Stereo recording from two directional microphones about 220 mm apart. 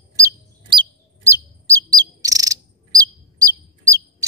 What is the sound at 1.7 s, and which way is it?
Chirp, 15° right (ahead or behind).